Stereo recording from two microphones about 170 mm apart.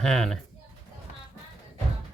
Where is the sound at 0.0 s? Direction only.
5° left (ahead or behind).